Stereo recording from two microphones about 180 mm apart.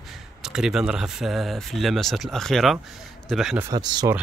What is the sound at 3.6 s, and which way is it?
Speech, 25° right (ahead or behind).